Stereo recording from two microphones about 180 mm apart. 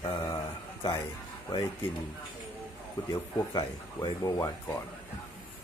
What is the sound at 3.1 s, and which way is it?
Speech, 25° left (ahead or behind).